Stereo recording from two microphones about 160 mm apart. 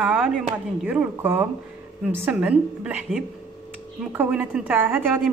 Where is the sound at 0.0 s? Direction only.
5° right (ahead or behind).